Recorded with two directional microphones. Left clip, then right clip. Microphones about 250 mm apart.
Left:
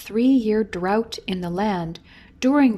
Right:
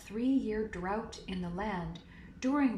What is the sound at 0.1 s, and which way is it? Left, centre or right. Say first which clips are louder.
Speech: left 14 dB; left.